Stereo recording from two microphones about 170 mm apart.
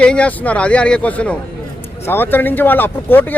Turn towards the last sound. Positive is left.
turn(degrees=10)  # may be behind; listen again after turning